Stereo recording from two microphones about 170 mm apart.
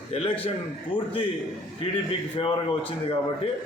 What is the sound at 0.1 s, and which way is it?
Speech, 35° left (ahead or behind).